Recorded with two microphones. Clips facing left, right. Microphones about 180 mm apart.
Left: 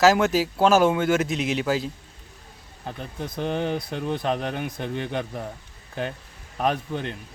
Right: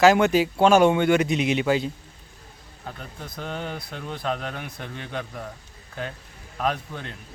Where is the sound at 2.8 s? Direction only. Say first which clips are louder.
Left 5 dB; 25° left (ahead or behind).